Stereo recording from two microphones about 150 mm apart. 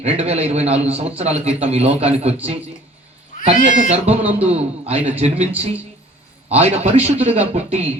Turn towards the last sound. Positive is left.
turn(degrees=-45)  # may be behind; listen again after turning